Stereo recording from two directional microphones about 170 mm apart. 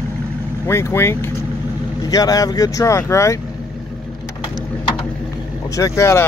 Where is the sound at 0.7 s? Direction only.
15° left (ahead or behind).